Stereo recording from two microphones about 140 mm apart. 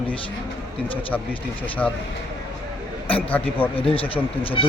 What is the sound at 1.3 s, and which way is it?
Speech, 40° left (ahead or behind).